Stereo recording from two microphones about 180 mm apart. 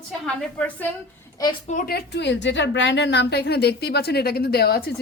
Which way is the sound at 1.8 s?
65° left (ahead or behind).